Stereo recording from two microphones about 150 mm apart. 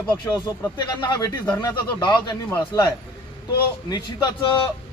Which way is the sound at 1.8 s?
30° left (ahead or behind).